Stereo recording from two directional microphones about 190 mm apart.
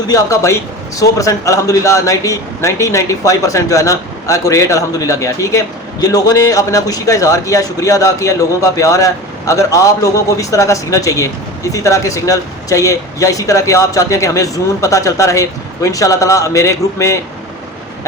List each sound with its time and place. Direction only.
0.1 s a man's voice: 15° left (ahead or behind)